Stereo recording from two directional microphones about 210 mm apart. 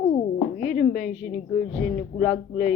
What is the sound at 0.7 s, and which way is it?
Speech, 40° left (ahead or behind).